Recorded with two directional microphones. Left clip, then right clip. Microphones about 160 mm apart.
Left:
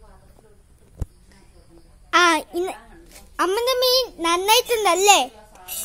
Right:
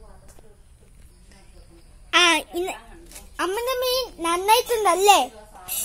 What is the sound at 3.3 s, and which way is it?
Speech, 35° left (ahead or behind).